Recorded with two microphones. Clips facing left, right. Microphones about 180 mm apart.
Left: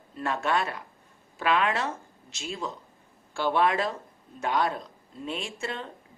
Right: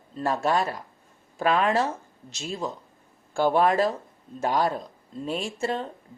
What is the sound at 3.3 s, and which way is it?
A woman's voice, 45° right (ahead or behind).